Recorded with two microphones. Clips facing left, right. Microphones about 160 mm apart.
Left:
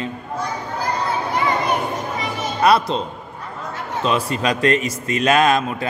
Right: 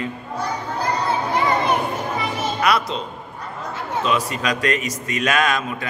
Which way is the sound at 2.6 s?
30° left (ahead or behind).